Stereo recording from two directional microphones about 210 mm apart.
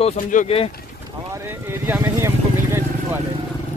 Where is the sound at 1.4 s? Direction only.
10° right (ahead or behind).